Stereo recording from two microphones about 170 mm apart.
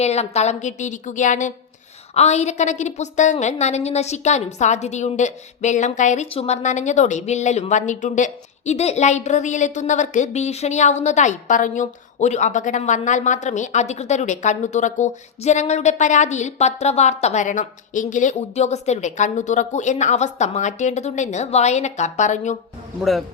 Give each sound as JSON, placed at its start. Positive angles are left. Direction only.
{"t": 0.0, "sound": "a woman's voice", "side_deg": 40}